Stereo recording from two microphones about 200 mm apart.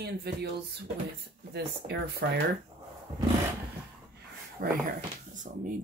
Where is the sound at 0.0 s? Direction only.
55° right (ahead or behind).